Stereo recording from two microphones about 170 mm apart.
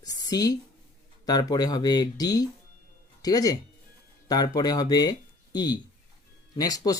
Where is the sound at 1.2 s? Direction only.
20° left (ahead or behind).